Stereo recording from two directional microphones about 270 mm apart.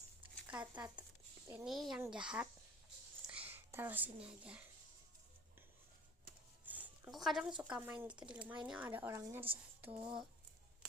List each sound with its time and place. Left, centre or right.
0.4 s a sound: centre
1.5 s a child's voice: centre
6.7 s a woman's voice: centre